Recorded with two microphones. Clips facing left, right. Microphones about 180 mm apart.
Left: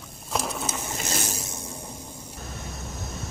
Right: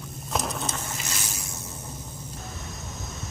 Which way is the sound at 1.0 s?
45° left (ahead or behind).